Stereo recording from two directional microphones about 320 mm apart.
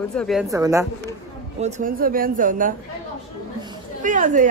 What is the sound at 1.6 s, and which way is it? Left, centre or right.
Speech, right.